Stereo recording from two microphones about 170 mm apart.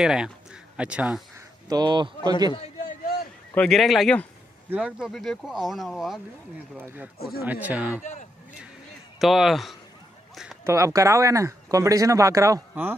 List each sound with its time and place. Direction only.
0.0 s speech: 5° right (ahead or behind)
1.7 s a man's voice: 25° right (ahead or behind)
2.8 s a sound: 65° left (ahead or behind)
3.5 s speech: 5° left (ahead or behind)
4.6 s speech: 5° right (ahead or behind)
8.0 s speech: 45° left (ahead or behind)
9.2 s speech: centre (ahead or behind)
10.3 s a sound: centre (ahead or behind)
10.6 s speech: 20° right (ahead or behind)